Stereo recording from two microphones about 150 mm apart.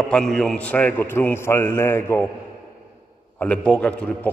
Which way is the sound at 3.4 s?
10° left (ahead or behind).